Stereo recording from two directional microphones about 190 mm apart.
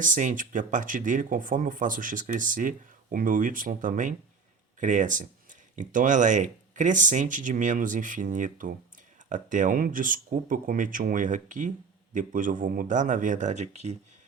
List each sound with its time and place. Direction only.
0.0 s speech: 45° right (ahead or behind)